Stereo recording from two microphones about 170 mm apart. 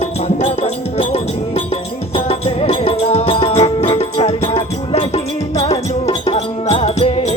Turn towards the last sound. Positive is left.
turn(degrees=35)  # may be behind; listen again after turning